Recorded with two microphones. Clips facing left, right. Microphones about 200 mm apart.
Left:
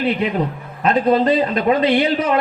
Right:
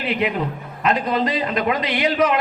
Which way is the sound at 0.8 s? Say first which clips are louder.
Left 5 dB; 30° left (ahead or behind).